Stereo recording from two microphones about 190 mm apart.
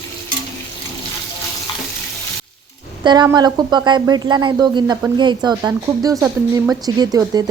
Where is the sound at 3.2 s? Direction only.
20° right (ahead or behind).